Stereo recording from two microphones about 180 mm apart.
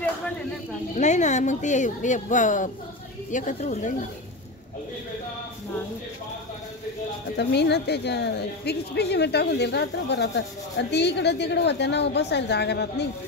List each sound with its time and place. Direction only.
0.9 s speech: 40° left (ahead or behind)
7.3 s a woman's voice: 70° left (ahead or behind)